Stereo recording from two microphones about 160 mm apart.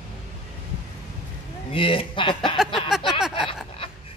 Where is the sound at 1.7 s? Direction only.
35° left (ahead or behind).